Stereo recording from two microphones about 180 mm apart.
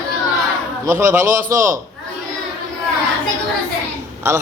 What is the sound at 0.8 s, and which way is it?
Speech, 15° right (ahead or behind).